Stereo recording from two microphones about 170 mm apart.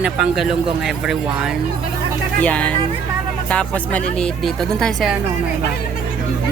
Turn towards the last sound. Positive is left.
turn(degrees=0)  # may be behind; listen again after turning